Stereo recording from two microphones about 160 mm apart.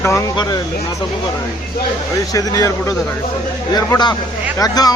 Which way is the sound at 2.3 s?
20° left (ahead or behind).